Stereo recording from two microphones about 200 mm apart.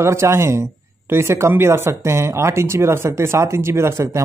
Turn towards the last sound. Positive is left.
turn(degrees=-15)  # may be behind; listen again after turning